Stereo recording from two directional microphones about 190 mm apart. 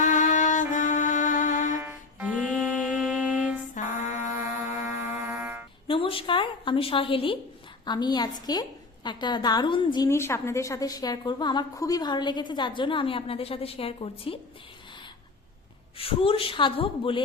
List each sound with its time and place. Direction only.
0.0 s music: 40° left (ahead or behind)
1.7 s music: 10° right (ahead or behind)
4.6 s music: 10° right (ahead or behind)
5.9 s a woman's voice: 30° left (ahead or behind)
16.0 s a woman's voice: 30° left (ahead or behind)